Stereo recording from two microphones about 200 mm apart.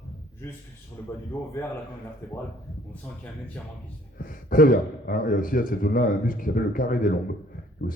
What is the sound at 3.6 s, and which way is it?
Speech, 10° left (ahead or behind).